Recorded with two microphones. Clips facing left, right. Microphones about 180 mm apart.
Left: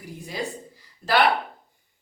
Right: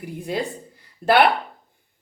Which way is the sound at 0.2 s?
60° right (ahead or behind).